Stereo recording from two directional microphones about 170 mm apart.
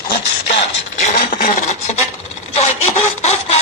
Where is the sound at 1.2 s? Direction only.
55° left (ahead or behind).